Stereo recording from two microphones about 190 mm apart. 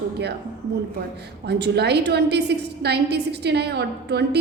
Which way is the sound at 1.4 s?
60° right (ahead or behind).